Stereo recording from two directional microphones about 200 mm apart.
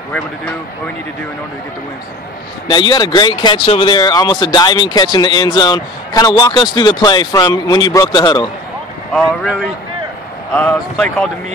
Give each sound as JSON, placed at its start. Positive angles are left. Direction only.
{"t": 2.7, "sound": "speech", "side_deg": 20}
{"t": 9.1, "sound": "speech", "side_deg": 0}